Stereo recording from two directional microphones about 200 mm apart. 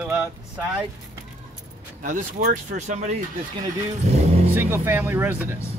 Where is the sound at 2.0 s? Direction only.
40° right (ahead or behind).